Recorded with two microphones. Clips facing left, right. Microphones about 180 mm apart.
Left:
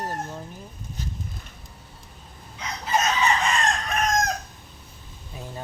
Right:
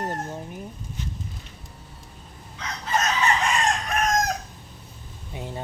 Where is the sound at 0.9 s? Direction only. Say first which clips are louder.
Left 4 dB; 40° left (ahead or behind).